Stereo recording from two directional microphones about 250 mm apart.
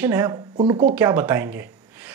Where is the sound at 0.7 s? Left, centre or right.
Right.